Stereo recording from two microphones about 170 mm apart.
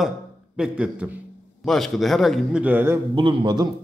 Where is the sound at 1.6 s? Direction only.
Centre (ahead or behind).